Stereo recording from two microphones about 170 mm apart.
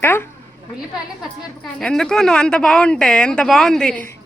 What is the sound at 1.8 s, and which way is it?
Speech, 5° left (ahead or behind).